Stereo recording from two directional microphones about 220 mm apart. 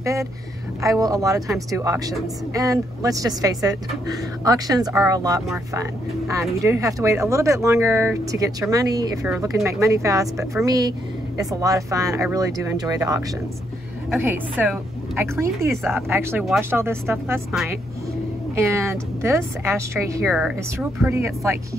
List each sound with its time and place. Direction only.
0.0 s speech: 15° right (ahead or behind)
14.2 s speech: 10° right (ahead or behind)
18.6 s speech: 10° right (ahead or behind)
21.0 s speech: 15° right (ahead or behind)